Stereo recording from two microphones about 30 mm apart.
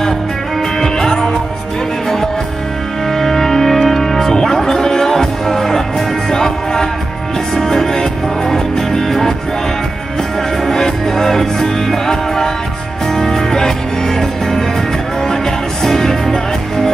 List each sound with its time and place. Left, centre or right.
0.7 s music: centre
3.2 s music: centre
10.6 s music: centre
13.1 s music: centre
15.8 s music: centre